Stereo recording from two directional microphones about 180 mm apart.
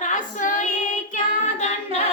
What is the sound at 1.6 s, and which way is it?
Singing, 40° left (ahead or behind).